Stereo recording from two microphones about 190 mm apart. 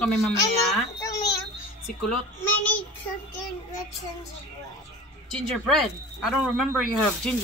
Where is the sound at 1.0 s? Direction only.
20° left (ahead or behind).